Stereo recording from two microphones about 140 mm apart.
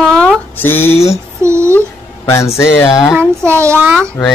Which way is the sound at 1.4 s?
20° right (ahead or behind).